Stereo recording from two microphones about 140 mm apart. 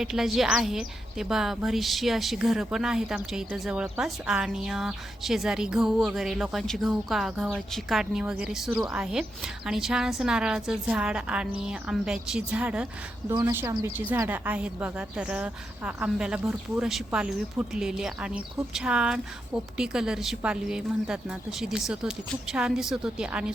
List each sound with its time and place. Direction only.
0.0 s speech: 5° right (ahead or behind)
13.2 s a woman's voice: 20° right (ahead or behind)